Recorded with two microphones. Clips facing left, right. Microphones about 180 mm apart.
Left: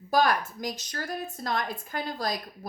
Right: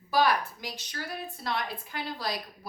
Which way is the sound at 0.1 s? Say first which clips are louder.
Left 1 dB; 45° left (ahead or behind).